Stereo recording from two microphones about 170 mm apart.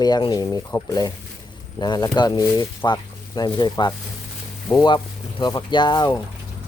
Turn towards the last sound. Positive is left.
turn(degrees=25)  # may be behind; listen again after turning